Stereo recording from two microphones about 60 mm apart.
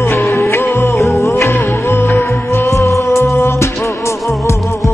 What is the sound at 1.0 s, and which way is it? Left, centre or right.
Music, left.